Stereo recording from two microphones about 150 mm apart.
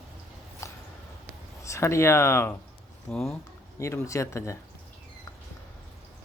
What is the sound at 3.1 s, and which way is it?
Speech, centre (ahead or behind).